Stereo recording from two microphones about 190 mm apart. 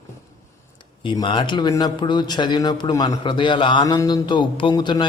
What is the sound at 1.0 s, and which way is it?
A man's voice, 25° left (ahead or behind).